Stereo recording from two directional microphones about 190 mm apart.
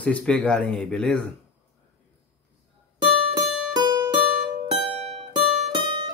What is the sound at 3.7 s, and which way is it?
Music, 20° right (ahead or behind).